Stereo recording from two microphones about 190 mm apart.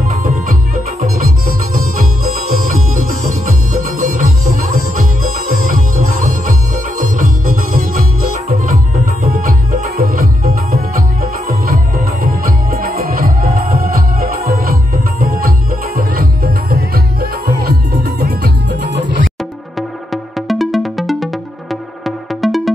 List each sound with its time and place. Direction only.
0.1 s music: 45° right (ahead or behind)
20.1 s music: centre (ahead or behind)